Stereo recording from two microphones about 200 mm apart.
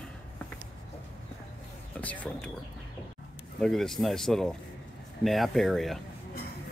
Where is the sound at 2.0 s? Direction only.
5° left (ahead or behind).